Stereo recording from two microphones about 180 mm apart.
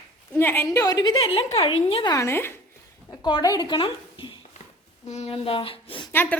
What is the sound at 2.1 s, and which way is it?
A woman's voice, 15° left (ahead or behind).